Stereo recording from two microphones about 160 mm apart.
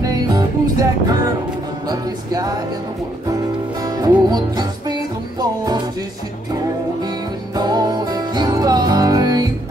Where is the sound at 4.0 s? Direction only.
25° right (ahead or behind).